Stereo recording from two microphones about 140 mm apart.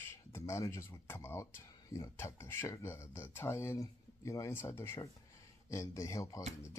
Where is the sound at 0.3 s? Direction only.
20° left (ahead or behind).